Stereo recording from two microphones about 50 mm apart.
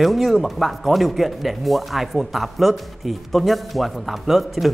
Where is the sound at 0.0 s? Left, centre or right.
Centre.